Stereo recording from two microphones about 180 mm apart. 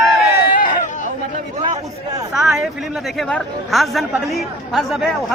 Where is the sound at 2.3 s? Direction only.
Centre (ahead or behind).